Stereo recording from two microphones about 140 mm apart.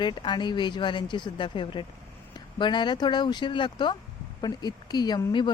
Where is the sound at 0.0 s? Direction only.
35° left (ahead or behind).